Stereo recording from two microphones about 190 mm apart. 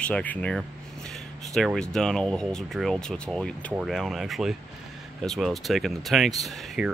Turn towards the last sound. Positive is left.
turn(degrees=0)  # may be behind; listen again after turning